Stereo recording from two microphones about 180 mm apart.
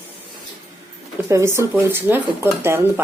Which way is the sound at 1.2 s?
15° right (ahead or behind).